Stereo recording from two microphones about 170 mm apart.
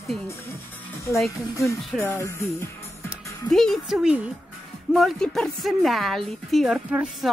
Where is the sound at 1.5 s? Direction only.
20° left (ahead or behind).